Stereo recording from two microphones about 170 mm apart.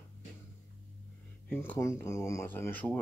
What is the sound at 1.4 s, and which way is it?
Speech, 10° left (ahead or behind).